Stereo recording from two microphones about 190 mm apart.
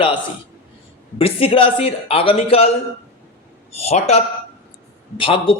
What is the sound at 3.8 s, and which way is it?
A man's voice, 35° left (ahead or behind).